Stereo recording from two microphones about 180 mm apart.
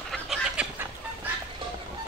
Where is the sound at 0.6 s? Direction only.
5° right (ahead or behind).